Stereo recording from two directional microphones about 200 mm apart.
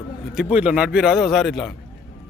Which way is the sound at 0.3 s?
5° right (ahead or behind).